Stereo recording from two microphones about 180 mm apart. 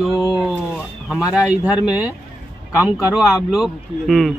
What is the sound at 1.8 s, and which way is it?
Speech, 5° right (ahead or behind).